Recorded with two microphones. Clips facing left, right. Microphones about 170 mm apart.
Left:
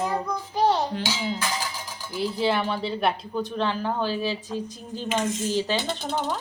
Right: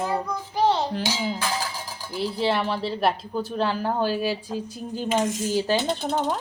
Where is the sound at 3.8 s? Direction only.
40° right (ahead or behind).